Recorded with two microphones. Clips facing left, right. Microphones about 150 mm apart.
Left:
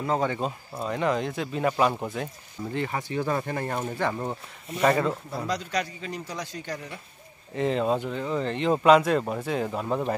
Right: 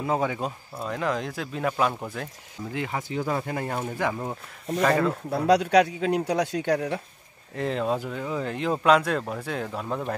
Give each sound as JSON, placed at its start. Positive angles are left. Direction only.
{"t": 0.0, "sound": "speech", "side_deg": -10}
{"t": 5.3, "sound": "a man's voice", "side_deg": -70}
{"t": 7.5, "sound": "speech", "side_deg": 0}